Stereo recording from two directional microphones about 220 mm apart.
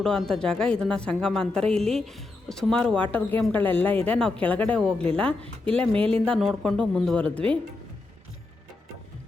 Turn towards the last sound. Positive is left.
turn(degrees=5)  # may be behind; listen again after turning